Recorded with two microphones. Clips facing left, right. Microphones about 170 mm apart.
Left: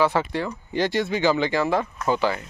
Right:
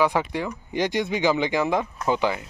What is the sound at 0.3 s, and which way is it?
Speech, 15° right (ahead or behind).